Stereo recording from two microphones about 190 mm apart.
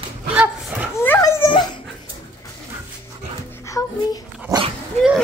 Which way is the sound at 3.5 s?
15° left (ahead or behind).